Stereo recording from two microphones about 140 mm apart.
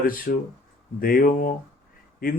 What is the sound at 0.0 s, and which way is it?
Speech, 90° left.